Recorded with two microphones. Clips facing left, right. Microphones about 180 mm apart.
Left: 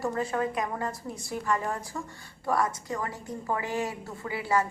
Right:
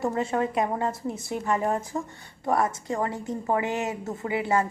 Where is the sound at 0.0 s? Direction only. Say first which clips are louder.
Right 3 dB; 25° right (ahead or behind).